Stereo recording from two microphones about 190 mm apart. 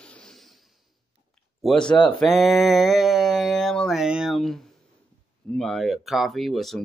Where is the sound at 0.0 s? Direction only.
5° left (ahead or behind).